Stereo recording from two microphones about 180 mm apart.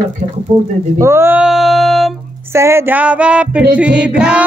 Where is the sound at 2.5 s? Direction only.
15° right (ahead or behind).